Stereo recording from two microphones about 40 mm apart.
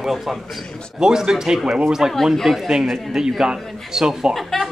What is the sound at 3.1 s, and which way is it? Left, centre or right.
A man's voice, centre.